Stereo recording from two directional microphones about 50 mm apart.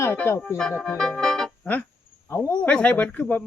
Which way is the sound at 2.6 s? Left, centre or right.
Left.